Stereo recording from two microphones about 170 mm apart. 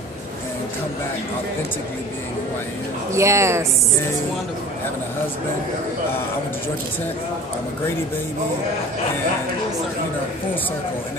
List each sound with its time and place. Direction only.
3.1 s speech: 15° right (ahead or behind)